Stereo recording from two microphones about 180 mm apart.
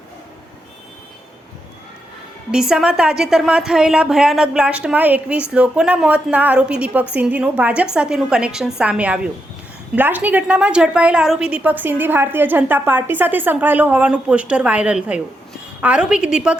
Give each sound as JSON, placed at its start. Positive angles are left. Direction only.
{"t": 2.5, "sound": "a woman's voice", "side_deg": -5}